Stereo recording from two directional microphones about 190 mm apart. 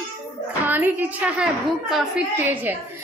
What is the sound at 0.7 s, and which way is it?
A woman's voice, 10° right (ahead or behind).